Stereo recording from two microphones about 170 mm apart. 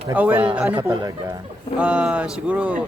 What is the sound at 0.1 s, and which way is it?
Speech, 10° right (ahead or behind).